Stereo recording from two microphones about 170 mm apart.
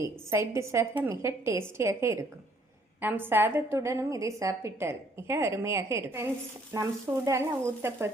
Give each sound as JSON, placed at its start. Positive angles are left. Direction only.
{"t": 0.0, "sound": "a woman's voice", "side_deg": -15}